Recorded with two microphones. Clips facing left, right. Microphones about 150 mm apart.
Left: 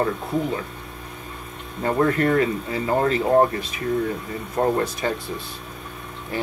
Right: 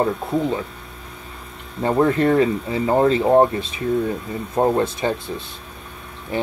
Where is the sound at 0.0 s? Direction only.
25° right (ahead or behind).